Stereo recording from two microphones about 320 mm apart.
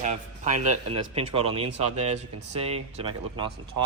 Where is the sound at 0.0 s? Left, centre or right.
Right.